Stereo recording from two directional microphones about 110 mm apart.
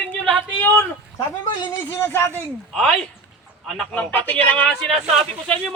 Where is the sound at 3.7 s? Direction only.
10° left (ahead or behind).